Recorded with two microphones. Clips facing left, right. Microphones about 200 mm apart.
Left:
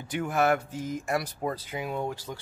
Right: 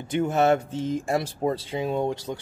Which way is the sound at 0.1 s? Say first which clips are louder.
Right 4 dB; 25° right (ahead or behind).